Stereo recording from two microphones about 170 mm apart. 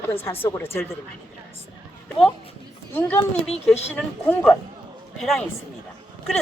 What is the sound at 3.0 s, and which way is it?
A man's voice, 10° left (ahead or behind).